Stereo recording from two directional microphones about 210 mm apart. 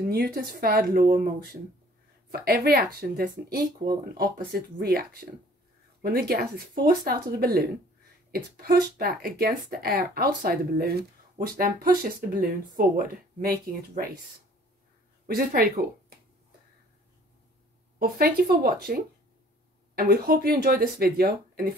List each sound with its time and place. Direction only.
0.1 s speech: 50° right (ahead or behind)
15.2 s speech: 45° right (ahead or behind)
17.9 s speech: 45° right (ahead or behind)
20.0 s speech: 45° right (ahead or behind)